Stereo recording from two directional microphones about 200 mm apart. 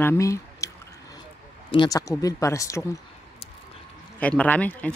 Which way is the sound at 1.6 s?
20° left (ahead or behind).